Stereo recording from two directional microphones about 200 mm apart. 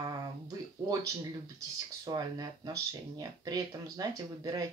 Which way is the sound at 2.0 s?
20° right (ahead or behind).